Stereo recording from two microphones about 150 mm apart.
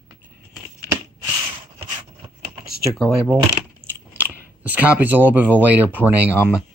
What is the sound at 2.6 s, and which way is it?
Speech, centre (ahead or behind).